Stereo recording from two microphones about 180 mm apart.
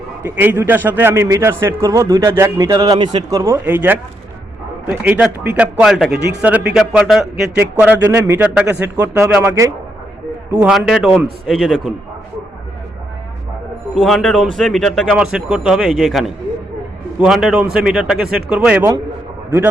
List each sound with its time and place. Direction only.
0.2 s a man's voice: 10° right (ahead or behind)
6.1 s speech: 70° right (ahead or behind)
6.7 s a man's voice: centre (ahead or behind)
10.6 s speech: 5° right (ahead or behind)
13.9 s speech: centre (ahead or behind)